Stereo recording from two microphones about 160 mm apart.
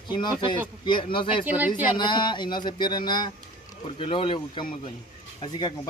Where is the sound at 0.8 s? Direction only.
30° left (ahead or behind).